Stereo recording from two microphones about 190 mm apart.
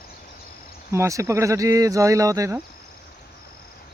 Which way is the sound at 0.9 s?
15° right (ahead or behind).